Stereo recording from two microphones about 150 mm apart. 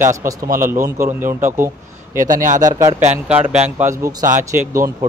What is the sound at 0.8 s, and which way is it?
Speech, 15° right (ahead or behind).